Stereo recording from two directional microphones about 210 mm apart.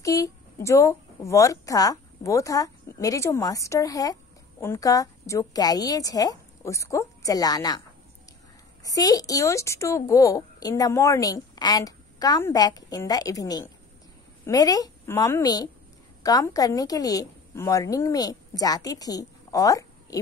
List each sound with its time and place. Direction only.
0.0 s a woman's voice: 15° left (ahead or behind)
8.8 s a woman's voice: 15° left (ahead or behind)